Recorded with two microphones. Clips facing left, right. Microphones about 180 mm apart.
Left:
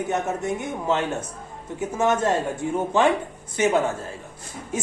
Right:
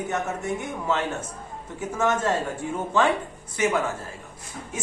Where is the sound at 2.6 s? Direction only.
20° left (ahead or behind).